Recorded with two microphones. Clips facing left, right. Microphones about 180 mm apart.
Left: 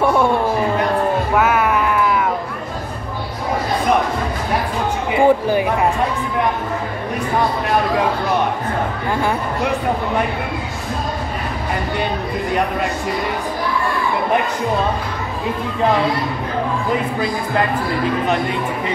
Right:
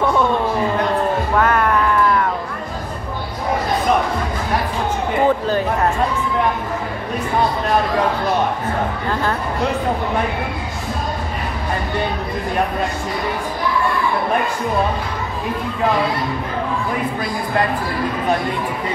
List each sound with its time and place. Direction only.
0.0 s a sound: 10° left (ahead or behind)
1.3 s music: 5° left (ahead or behind)
5.1 s speech: 10° left (ahead or behind)